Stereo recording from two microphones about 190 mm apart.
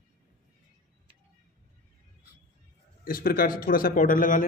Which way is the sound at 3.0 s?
50° left (ahead or behind).